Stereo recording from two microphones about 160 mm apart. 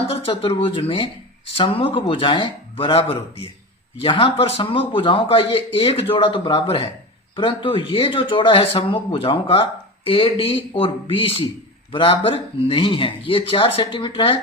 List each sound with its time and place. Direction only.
0.1 s speech: 35° left (ahead or behind)